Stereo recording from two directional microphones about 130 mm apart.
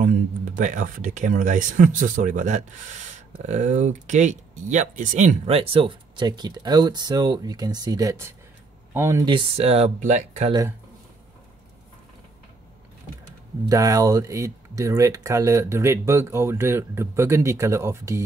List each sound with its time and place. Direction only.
0.6 s speech: 80° right
3.4 s speech: 60° right (ahead or behind)
5.5 s speech: 45° right (ahead or behind); by 9.2 s 20° right (ahead or behind)
9.6 s speech: 55° right (ahead or behind)
9.9 s speech: 65° right (ahead or behind)
13.7 s speech: 25° right (ahead or behind)